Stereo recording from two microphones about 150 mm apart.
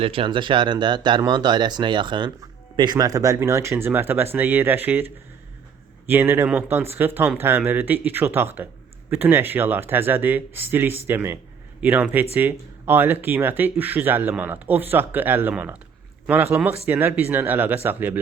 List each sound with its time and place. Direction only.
0.0 s speech: 35° right (ahead or behind); by 18.2 s 10° right (ahead or behind)